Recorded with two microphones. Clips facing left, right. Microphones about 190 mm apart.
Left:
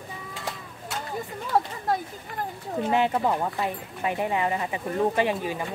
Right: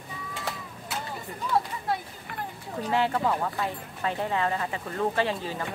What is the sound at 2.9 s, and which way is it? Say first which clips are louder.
Speech: left 2 dB; 20° left (ahead or behind).